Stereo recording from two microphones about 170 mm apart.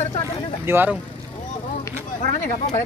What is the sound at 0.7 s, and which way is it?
Speech, 10° right (ahead or behind).